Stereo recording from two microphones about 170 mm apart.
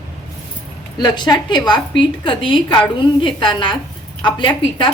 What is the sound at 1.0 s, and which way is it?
A woman's voice, 25° left (ahead or behind).